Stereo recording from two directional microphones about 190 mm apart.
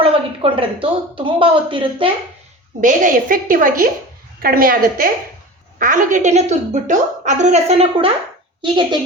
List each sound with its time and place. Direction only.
0.0 s speech: 30° right (ahead or behind)
2.8 s a woman's voice: 45° right (ahead or behind); by 9.0 s 25° right (ahead or behind)